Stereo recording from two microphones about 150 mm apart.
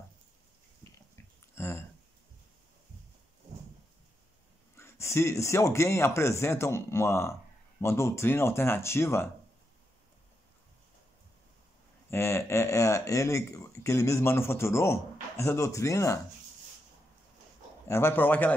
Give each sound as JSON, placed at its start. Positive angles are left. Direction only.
{"t": 1.1, "sound": "a sound", "side_deg": 15}
{"t": 4.7, "sound": "speech", "side_deg": 20}
{"t": 12.1, "sound": "speech", "side_deg": 15}
{"t": 17.8, "sound": "speech", "side_deg": 15}